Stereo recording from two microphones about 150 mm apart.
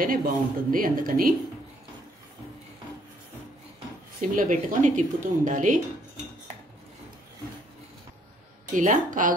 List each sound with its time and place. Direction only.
0.0 s speech: 70° right (ahead or behind)
4.4 s speech: 55° right (ahead or behind)
8.7 s speech: 60° right (ahead or behind)